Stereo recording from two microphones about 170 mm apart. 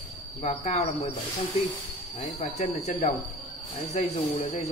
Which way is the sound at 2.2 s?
45° left (ahead or behind).